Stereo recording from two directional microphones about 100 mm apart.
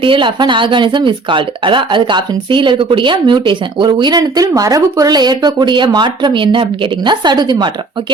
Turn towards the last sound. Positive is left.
turn(degrees=-45)  # may be behind; listen again after turning